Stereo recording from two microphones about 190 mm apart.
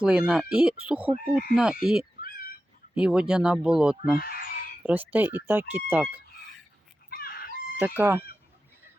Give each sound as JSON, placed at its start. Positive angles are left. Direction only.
{"t": 0.0, "sound": "speech", "side_deg": -5}
{"t": 4.2, "sound": "speech", "side_deg": 50}
{"t": 4.8, "sound": "speech", "side_deg": -10}
{"t": 7.1, "sound": "dog", "side_deg": 50}
{"t": 7.8, "sound": "speech", "side_deg": -10}